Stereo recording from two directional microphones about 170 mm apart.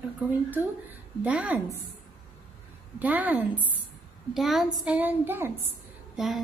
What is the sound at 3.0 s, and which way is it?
A woman's voice, 10° right (ahead or behind).